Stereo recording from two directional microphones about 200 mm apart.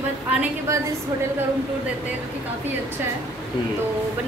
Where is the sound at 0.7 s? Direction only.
15° right (ahead or behind).